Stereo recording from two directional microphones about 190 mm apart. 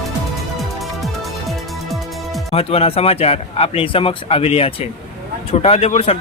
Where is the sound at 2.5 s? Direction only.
30° left (ahead or behind).